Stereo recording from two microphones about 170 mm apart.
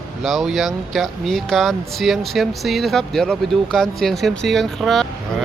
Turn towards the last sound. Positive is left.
turn(degrees=0)  # may be behind; listen again after turning